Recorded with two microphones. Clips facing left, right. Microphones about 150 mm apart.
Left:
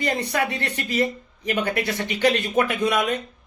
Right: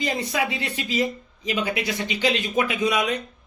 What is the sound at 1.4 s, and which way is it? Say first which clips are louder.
Speech: left 2 dB; 60° left (ahead or behind).